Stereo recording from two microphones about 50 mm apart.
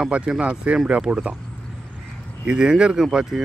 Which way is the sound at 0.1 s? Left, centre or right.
Right.